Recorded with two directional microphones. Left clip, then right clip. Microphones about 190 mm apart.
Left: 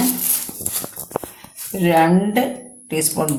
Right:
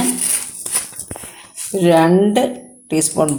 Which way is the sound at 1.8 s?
40° right (ahead or behind).